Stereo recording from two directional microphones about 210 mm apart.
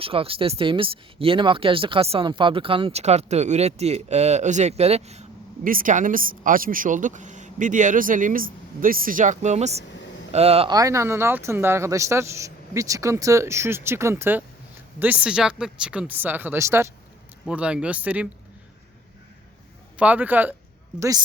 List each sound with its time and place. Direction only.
0.0 s speech: 25° right (ahead or behind); by 18.3 s 5° right (ahead or behind)
20.0 s speech: 5° right (ahead or behind)